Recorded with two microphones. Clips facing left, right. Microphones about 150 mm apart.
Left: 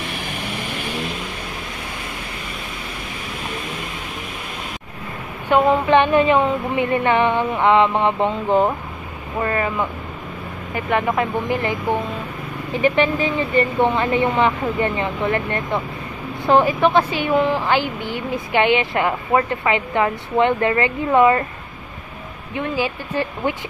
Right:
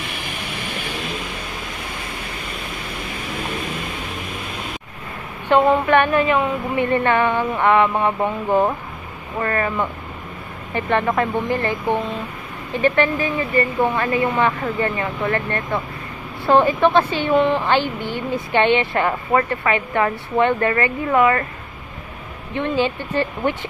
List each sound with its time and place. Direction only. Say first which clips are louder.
5.5 s speech: even; 20° left (ahead or behind)
6.8 s speech: even; 15° left (ahead or behind)
22.5 s speech: right 3 dB; 10° left (ahead or behind)